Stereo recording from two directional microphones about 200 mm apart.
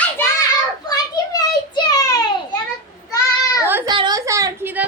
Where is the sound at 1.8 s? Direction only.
15° left (ahead or behind).